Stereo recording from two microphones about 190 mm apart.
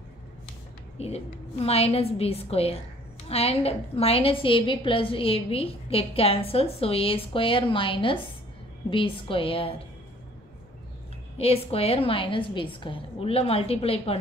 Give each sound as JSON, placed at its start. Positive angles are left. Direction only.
{"t": 0.9, "sound": "a woman's voice", "side_deg": 35}
{"t": 11.3, "sound": "a woman's voice", "side_deg": 30}